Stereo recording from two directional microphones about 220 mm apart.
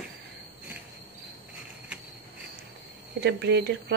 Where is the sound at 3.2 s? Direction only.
50° right (ahead or behind).